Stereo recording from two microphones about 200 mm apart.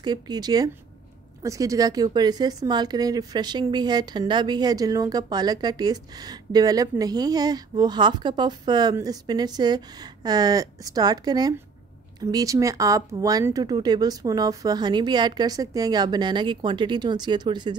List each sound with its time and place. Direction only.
0.0 s a woman's voice: 20° right (ahead or behind)